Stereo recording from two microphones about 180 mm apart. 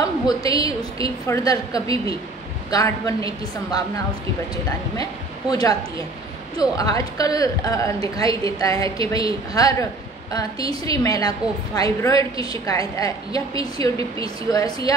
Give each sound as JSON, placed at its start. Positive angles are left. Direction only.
{"t": 0.0, "sound": "a woman's voice", "side_deg": 20}
{"t": 5.5, "sound": "a woman's voice", "side_deg": 20}